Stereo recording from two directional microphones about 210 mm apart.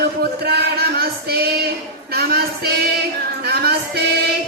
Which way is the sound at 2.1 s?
50° right (ahead or behind).